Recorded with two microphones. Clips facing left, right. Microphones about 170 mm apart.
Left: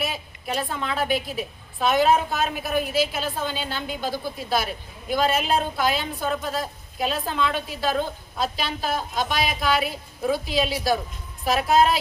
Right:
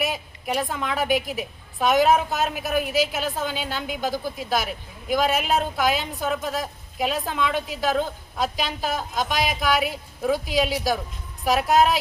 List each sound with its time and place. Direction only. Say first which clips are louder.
0.0 s a woman's voice: right 2 dB; 15° right (ahead or behind)